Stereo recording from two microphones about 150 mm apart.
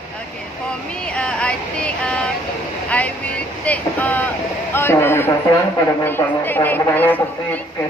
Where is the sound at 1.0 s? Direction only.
5° left (ahead or behind).